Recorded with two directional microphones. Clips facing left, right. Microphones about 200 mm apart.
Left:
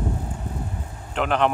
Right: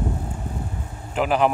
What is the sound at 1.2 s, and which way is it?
Speech, 5° right (ahead or behind).